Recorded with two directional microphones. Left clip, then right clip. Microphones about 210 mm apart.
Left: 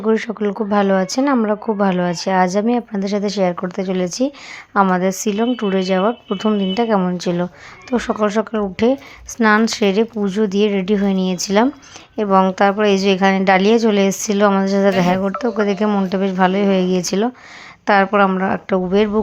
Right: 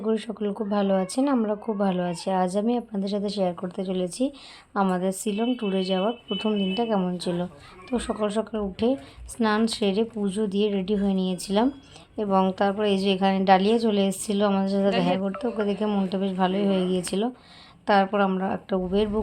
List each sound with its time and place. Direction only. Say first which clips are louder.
0.0 s speech: left 9 dB; 25° left (ahead or behind)